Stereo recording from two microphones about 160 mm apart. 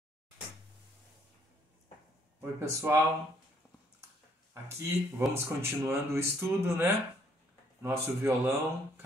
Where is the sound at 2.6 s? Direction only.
15° right (ahead or behind).